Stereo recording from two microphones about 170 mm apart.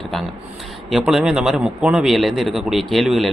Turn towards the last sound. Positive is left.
turn(degrees=0)  # may be behind; listen again after turning